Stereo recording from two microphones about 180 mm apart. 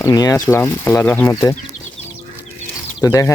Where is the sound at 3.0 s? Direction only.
15° left (ahead or behind).